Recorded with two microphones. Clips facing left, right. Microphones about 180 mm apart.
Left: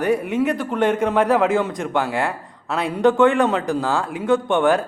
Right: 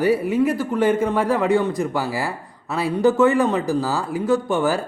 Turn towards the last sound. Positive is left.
turn(degrees=0)  # may be behind; listen again after turning